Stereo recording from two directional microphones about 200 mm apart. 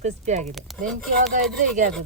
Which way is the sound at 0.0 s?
35° right (ahead or behind).